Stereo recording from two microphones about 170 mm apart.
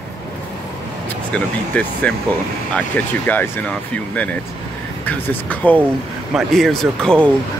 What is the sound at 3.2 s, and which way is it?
Speech, 10° left (ahead or behind).